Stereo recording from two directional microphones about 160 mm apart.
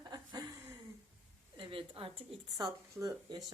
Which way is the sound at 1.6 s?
35° right (ahead or behind).